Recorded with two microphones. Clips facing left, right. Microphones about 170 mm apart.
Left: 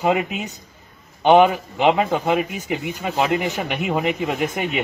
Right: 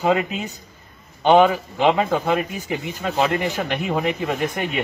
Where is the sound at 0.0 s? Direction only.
10° left (ahead or behind).